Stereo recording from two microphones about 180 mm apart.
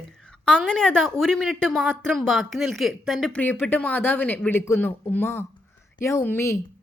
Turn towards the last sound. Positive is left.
turn(degrees=15)  # may be behind; listen again after turning